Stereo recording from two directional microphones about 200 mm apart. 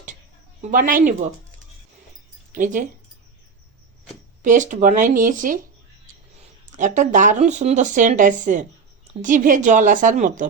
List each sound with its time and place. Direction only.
0.6 s speech: 45° right (ahead or behind)
2.5 s speech: 40° right (ahead or behind)
4.4 s speech: 40° right (ahead or behind)